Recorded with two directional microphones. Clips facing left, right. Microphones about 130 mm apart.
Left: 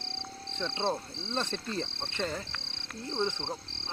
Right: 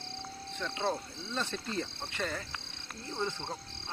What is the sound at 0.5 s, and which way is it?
Speech, 25° left (ahead or behind).